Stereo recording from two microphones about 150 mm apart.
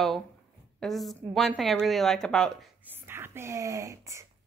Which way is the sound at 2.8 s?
15° right (ahead or behind).